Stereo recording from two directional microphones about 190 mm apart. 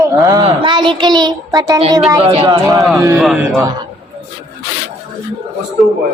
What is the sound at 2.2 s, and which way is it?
Speech, 30° right (ahead or behind).